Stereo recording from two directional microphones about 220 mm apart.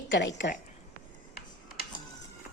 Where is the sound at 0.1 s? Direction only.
55° left (ahead or behind).